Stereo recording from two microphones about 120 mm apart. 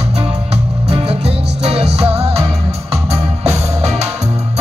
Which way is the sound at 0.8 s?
60° right (ahead or behind).